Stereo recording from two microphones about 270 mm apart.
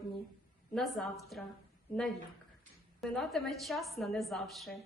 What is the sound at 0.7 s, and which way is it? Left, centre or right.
Speech, centre.